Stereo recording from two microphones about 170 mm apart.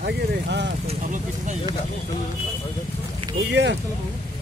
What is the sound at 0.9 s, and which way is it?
Speech, 45° right (ahead or behind).